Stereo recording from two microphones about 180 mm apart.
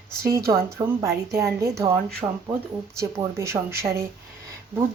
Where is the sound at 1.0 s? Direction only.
15° right (ahead or behind).